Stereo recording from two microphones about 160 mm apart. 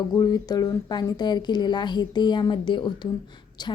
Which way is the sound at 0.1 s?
25° left (ahead or behind).